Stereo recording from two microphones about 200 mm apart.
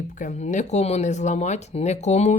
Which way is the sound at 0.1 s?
35° left (ahead or behind).